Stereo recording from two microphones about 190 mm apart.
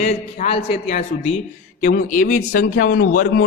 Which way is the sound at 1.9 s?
50° left (ahead or behind).